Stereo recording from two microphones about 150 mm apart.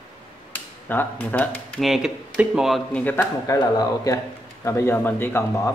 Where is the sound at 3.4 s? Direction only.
25° left (ahead or behind).